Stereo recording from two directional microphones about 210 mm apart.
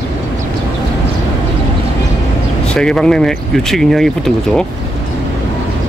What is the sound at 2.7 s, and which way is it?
Speech, 5° left (ahead or behind).